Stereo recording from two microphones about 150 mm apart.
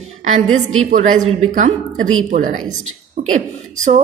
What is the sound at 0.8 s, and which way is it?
A woman's voice, 60° right (ahead or behind).